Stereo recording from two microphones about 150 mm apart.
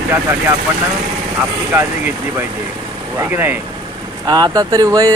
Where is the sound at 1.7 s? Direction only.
15° right (ahead or behind).